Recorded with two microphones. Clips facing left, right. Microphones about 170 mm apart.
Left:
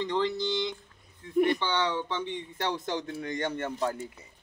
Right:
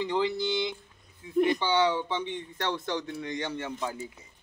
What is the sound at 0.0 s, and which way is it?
Speech, 10° right (ahead or behind).